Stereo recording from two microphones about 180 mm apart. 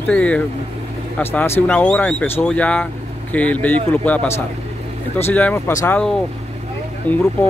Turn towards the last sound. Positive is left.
turn(degrees=10)  # may be behind; listen again after turning